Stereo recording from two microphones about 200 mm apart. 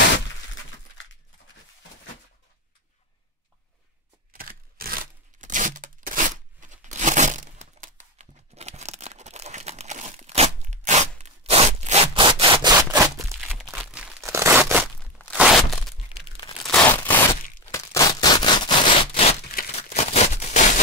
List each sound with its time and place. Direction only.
4.3 s tearing: 45° right (ahead or behind); by 12.7 s 25° right (ahead or behind)
12.7 s zipper: 15° right (ahead or behind)
13.7 s crumpling: 5° right (ahead or behind)
15.0 s crunch: 5° left (ahead or behind)
15.3 s a sound: centre (ahead or behind)
16.3 s tearing: 25° left (ahead or behind)
16.6 s a sound: 5° left (ahead or behind); by 20.8 s 35° left (ahead or behind)